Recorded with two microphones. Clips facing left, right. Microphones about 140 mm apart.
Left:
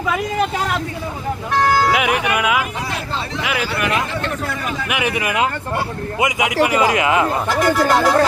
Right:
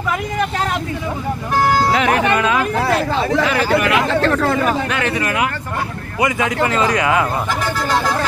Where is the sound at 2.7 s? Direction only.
65° right (ahead or behind).